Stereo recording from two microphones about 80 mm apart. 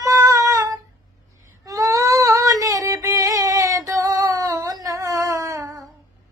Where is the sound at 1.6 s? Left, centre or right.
Right.